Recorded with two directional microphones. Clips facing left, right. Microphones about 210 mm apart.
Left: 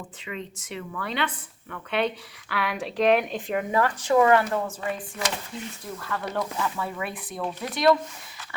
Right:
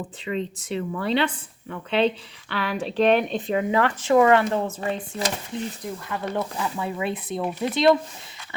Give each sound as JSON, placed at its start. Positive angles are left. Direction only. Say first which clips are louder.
{"t": 0.3, "sound": "speech", "louder": "right 8 dB", "side_deg": -30}
{"t": 5.8, "sound": "speech", "louder": "right 2 dB", "side_deg": -20}